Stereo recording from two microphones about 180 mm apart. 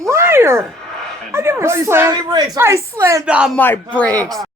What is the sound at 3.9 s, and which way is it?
Speech, 10° left (ahead or behind).